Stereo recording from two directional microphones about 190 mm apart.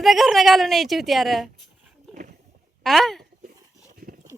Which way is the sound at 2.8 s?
Centre (ahead or behind).